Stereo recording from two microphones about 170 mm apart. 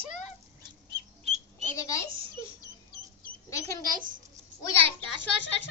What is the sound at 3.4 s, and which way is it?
Speech, 20° left (ahead or behind).